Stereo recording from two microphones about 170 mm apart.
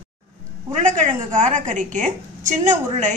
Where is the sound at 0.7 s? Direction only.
45° right (ahead or behind).